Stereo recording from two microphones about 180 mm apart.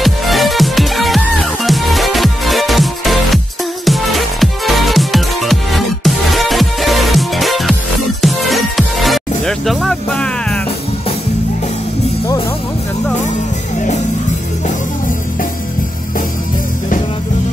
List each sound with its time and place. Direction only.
0.0 s music: centre (ahead or behind)